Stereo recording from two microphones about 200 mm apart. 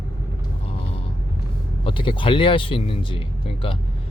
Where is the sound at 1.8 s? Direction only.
25° left (ahead or behind).